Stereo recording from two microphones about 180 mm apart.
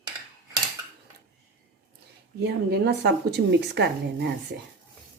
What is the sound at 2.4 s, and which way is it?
Speech, 70° right (ahead or behind).